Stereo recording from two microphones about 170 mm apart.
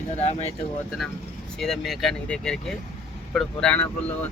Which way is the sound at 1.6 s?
Centre (ahead or behind).